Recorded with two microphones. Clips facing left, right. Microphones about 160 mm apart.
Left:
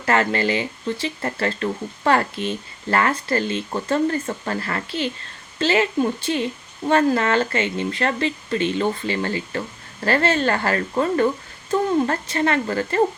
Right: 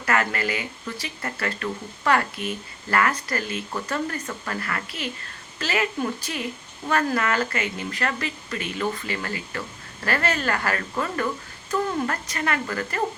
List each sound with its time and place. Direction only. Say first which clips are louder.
0.0 s speech: left 5 dB; 30° left (ahead or behind)